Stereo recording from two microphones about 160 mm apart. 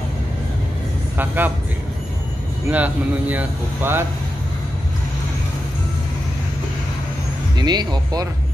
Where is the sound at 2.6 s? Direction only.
10° right (ahead or behind).